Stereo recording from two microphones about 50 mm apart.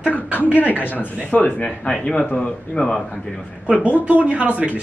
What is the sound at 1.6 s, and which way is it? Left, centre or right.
Speech, centre.